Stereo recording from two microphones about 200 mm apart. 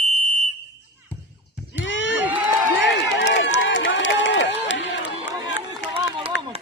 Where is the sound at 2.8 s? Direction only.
65° left (ahead or behind).